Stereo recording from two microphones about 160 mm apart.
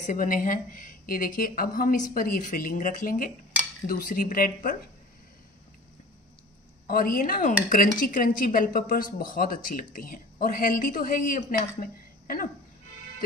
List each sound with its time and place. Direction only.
0.0 s speech: 55° left (ahead or behind)
6.9 s speech: 60° left (ahead or behind)